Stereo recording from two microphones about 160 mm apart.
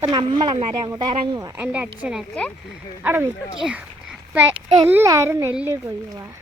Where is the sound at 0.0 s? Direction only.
30° right (ahead or behind).